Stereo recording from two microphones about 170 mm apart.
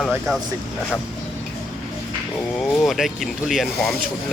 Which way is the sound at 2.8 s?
Centre (ahead or behind).